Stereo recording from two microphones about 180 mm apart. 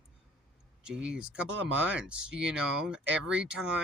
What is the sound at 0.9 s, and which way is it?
Speech, 5° right (ahead or behind).